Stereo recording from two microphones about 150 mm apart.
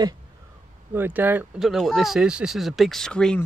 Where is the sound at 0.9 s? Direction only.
15° right (ahead or behind).